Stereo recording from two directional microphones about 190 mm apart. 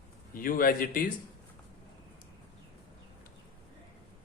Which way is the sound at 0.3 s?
50° left (ahead or behind).